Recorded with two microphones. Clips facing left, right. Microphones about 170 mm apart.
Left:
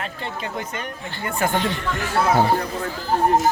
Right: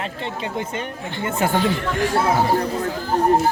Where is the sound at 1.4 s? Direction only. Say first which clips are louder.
Right 1 dB; 20° right (ahead or behind).